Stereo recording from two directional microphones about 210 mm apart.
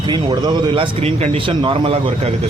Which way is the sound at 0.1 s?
20° right (ahead or behind).